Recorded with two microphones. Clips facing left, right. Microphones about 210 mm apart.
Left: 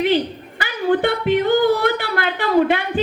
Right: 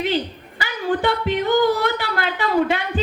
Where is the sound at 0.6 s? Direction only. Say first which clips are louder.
Left 3 dB; 60° left (ahead or behind).